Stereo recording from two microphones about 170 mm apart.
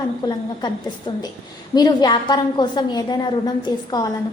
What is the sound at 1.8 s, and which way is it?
A woman's voice, 25° left (ahead or behind).